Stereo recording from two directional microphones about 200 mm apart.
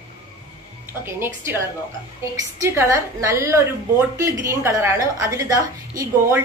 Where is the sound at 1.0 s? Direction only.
10° right (ahead or behind).